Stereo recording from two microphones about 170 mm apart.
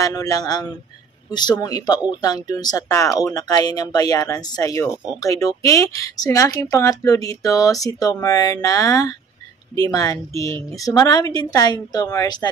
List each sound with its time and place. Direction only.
0.0 s speech: 20° left (ahead or behind)